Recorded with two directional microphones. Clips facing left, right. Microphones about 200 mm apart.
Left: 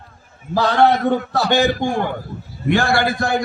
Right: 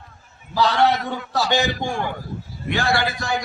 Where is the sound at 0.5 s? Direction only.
50° left (ahead or behind).